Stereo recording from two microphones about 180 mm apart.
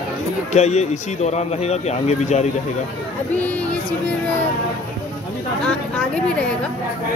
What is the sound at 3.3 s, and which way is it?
Speech, 10° left (ahead or behind).